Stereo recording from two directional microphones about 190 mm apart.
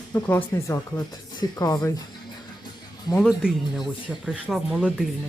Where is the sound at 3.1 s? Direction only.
5° right (ahead or behind).